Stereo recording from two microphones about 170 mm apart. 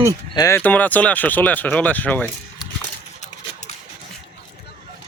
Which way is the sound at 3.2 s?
40° left (ahead or behind).